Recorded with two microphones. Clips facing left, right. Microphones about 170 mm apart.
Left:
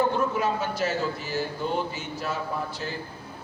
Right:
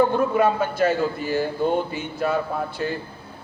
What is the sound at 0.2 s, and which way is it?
A man's voice, 55° right (ahead or behind).